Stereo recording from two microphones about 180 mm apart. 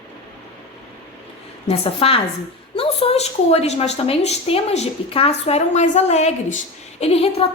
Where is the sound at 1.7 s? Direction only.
35° left (ahead or behind).